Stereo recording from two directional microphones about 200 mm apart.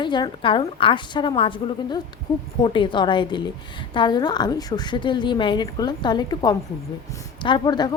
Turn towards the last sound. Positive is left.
turn(degrees=20)  # may be behind; listen again after turning